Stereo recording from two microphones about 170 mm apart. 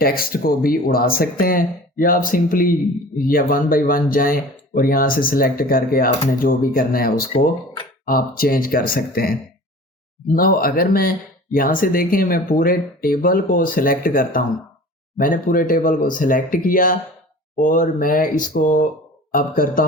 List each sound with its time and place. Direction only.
0.0 s speech: 60° left (ahead or behind)
7.3 s speech: 25° left (ahead or behind)
8.0 s speech: 55° left (ahead or behind)